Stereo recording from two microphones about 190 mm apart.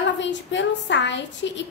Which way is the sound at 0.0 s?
70° left (ahead or behind).